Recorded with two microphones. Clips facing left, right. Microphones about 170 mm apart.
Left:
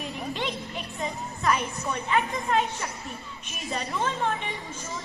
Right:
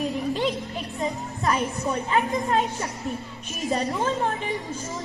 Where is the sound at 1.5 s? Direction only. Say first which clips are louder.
Right 2 dB; 35° right (ahead or behind).